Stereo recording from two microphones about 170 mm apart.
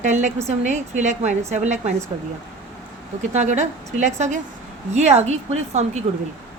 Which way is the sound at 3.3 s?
45° right (ahead or behind).